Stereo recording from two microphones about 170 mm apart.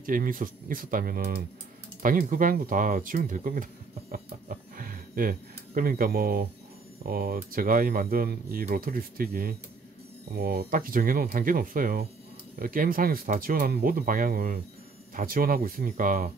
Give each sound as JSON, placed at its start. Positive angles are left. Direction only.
{"t": 0.0, "sound": "speech", "side_deg": -55}
{"t": 4.1, "sound": "a sound", "side_deg": -55}
{"t": 7.0, "sound": "speech", "side_deg": -60}